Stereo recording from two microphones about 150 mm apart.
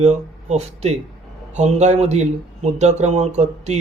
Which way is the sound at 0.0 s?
45° right (ahead or behind).